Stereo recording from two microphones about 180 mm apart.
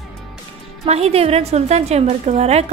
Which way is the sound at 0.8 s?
35° right (ahead or behind).